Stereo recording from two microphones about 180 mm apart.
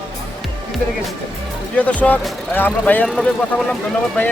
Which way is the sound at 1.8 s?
10° left (ahead or behind).